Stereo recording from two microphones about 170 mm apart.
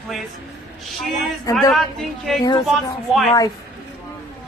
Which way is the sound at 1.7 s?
Centre (ahead or behind).